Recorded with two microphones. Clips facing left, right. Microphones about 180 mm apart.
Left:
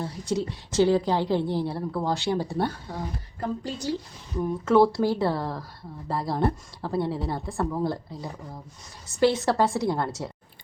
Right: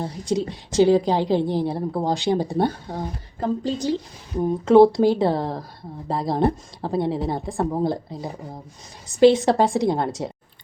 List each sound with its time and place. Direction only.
0.0 s a woman's voice: 15° right (ahead or behind)